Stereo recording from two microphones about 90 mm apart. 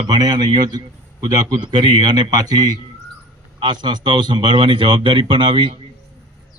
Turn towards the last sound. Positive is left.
turn(degrees=-65)  # may be behind; listen again after turning